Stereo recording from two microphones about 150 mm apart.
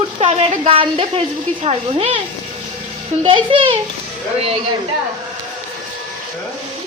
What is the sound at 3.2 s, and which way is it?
Speech, 35° right (ahead or behind).